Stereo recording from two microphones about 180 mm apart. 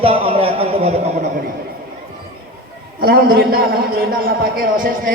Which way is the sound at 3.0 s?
60° right (ahead or behind).